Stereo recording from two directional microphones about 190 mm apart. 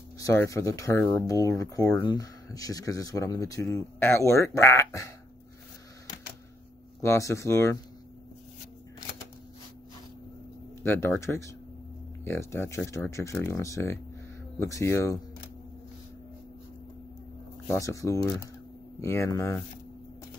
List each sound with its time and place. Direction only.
0.2 s speech: 15° left (ahead or behind)
7.0 s speech: 15° left (ahead or behind)
10.8 s speech: 10° left (ahead or behind)
17.6 s speech: 15° left (ahead or behind)